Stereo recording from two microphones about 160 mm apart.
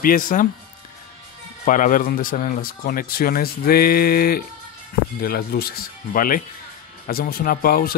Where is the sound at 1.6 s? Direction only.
55° left (ahead or behind).